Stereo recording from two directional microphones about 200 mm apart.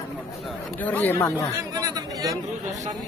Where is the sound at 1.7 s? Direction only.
15° right (ahead or behind).